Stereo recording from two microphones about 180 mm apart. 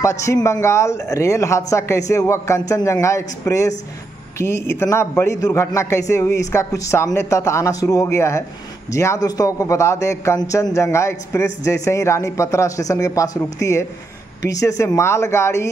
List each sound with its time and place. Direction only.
0.0 s a man's voice: 15° left (ahead or behind)